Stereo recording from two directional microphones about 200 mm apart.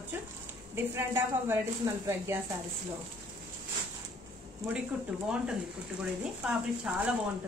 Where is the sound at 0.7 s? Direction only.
10° right (ahead or behind).